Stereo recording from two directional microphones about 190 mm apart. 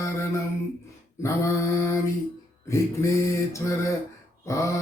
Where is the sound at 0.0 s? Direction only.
15° left (ahead or behind).